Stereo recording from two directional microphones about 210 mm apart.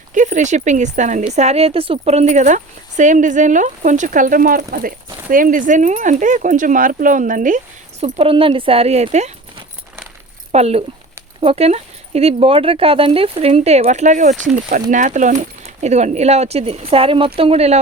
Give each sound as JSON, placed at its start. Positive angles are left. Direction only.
{"t": 0.1, "sound": "a woman's voice", "side_deg": -35}
{"t": 8.1, "sound": "speech", "side_deg": -25}
{"t": 10.5, "sound": "a woman's voice", "side_deg": -30}